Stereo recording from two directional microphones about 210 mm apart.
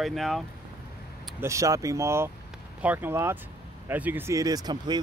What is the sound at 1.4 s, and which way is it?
Speech, 15° right (ahead or behind).